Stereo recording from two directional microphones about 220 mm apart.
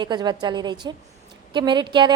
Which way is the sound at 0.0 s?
20° right (ahead or behind).